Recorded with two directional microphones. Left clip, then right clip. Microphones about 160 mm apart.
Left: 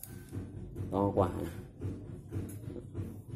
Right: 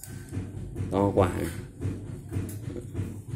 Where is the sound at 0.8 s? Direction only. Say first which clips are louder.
Right 6 dB; 5° left (ahead or behind).